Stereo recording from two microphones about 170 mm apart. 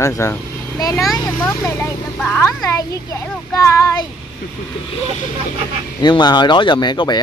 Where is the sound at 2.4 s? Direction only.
20° left (ahead or behind).